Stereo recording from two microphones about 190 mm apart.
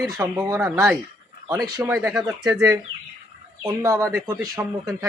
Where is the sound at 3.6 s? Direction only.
15° right (ahead or behind).